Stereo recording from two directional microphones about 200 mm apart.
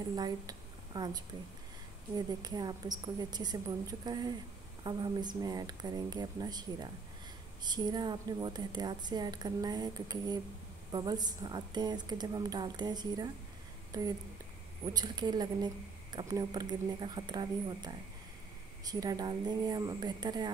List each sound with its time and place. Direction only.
0.1 s a woman's voice: 20° right (ahead or behind)
14.9 s a woman's voice: 20° right (ahead or behind)